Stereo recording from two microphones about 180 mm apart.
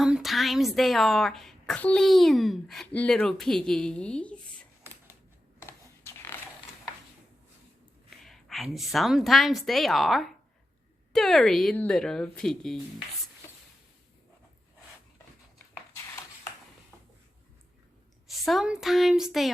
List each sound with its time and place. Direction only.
0.0 s a woman's voice: centre (ahead or behind)
5.6 s a sound: 15° left (ahead or behind)
8.1 s a woman's voice: centre (ahead or behind)
18.4 s a woman's voice: centre (ahead or behind)